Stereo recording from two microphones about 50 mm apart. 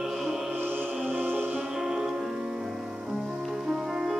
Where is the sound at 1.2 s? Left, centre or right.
Right.